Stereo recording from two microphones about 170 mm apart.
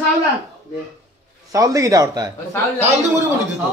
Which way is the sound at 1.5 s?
20° right (ahead or behind).